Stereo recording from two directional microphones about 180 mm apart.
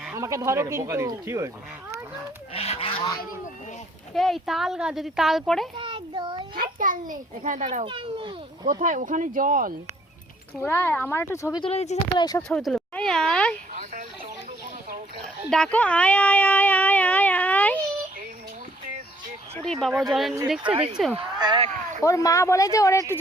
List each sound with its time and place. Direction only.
0.1 s speech: 15° right (ahead or behind)
2.5 s goose: 35° left (ahead or behind)
4.1 s speech: centre (ahead or behind)
5.7 s a sound: 25° right (ahead or behind)
6.6 s a child's voice: 50° right (ahead or behind); by 8.3 s 30° right (ahead or behind)
8.6 s speech: 45° right (ahead or behind)
10.6 s speech: 10° left (ahead or behind)
11.6 s speech: 35° left (ahead or behind)
12.4 s a sound: 5° left (ahead or behind)
15.4 s a sound: 5° left (ahead or behind)
19.6 s speech: centre (ahead or behind)
20.7 s speech: 30° right (ahead or behind)
21.2 s a sound: 25° right (ahead or behind)
22.0 s speech: 15° left (ahead or behind)